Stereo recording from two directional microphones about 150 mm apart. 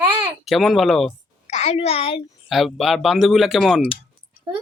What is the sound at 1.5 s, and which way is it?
Speech, 45° left (ahead or behind).